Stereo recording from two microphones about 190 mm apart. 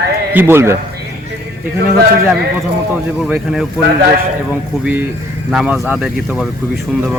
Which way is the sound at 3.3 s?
Centre (ahead or behind).